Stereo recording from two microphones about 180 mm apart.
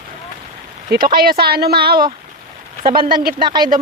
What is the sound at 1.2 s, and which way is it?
Speech, 60° right (ahead or behind).